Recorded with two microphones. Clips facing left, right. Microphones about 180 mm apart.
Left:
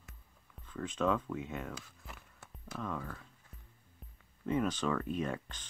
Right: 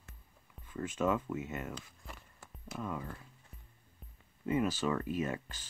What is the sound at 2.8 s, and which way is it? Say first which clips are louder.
Speech: even; 10° right (ahead or behind).